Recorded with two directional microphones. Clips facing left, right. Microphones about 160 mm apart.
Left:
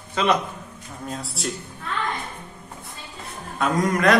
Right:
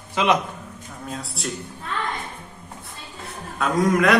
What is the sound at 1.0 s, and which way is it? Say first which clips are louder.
Speech: left 1 dB; centre (ahead or behind).